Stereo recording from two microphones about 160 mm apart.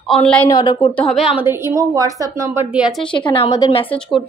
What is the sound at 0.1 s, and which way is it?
Speech, 5° left (ahead or behind).